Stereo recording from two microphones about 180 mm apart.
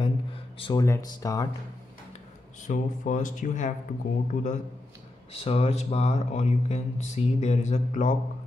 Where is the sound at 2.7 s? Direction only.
45° left (ahead or behind).